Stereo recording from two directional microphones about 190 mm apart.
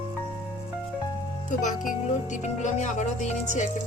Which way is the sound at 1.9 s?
40° left (ahead or behind).